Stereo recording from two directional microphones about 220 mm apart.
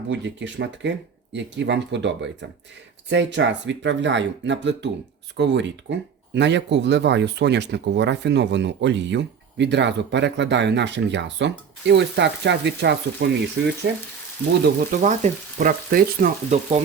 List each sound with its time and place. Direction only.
0.1 s speech: 55° right (ahead or behind)
15.0 s frying: 35° right (ahead or behind)